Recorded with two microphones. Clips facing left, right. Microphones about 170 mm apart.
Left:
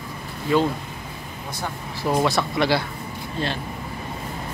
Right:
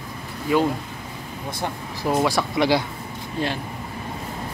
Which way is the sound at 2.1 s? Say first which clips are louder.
Even; 10° right (ahead or behind).